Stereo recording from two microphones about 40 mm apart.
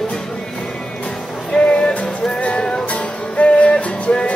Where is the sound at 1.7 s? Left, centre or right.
Left.